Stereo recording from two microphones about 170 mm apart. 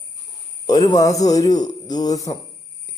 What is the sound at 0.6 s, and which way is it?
A man's voice, 25° left (ahead or behind).